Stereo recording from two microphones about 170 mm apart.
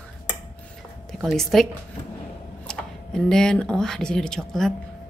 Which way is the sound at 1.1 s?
Centre (ahead or behind).